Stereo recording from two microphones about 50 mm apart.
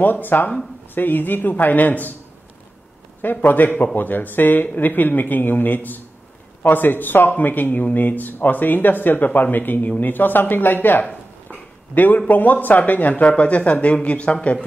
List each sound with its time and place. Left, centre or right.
0.0 s a man's voice: left
3.4 s a man's voice: left
11.5 s a sound: left
12.3 s a man's voice: left